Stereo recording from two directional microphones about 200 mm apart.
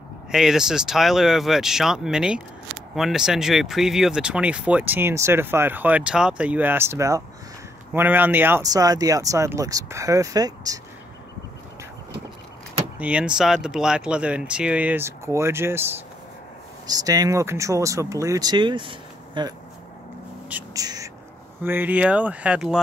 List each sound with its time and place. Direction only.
0.3 s speech: centre (ahead or behind); by 10.8 s 20° right (ahead or behind)
13.0 s speech: 5° right (ahead or behind); by 19.5 s 25° right (ahead or behind)
20.4 s a sound: 10° right (ahead or behind)
20.8 s whispering: 20° right (ahead or behind)
21.6 s speech: 10° right (ahead or behind)